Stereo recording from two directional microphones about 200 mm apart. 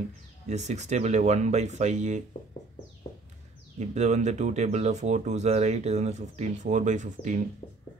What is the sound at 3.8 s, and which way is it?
Speech, 35° right (ahead or behind).